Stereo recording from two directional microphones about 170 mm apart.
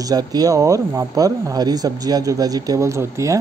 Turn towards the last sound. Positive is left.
turn(degrees=-20)  # may be behind; listen again after turning